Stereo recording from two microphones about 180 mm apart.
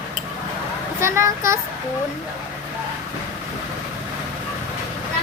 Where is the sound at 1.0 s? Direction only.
15° right (ahead or behind).